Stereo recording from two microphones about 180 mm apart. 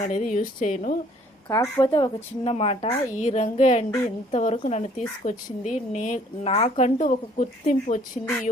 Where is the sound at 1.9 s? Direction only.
30° left (ahead or behind).